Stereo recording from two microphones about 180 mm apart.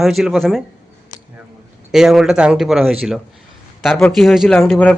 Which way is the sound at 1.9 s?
Centre (ahead or behind).